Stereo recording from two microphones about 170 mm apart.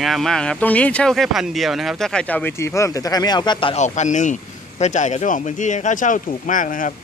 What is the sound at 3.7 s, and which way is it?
Speech, 45° left (ahead or behind).